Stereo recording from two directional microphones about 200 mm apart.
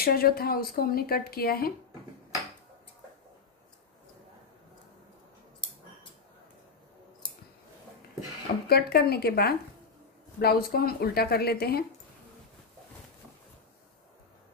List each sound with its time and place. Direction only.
0.0 s speech: 50° left (ahead or behind)
8.6 s speech: 50° left (ahead or behind)